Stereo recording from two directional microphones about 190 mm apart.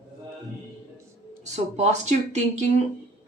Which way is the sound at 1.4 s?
35° right (ahead or behind).